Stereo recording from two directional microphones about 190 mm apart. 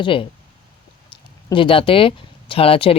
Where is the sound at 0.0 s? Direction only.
25° left (ahead or behind).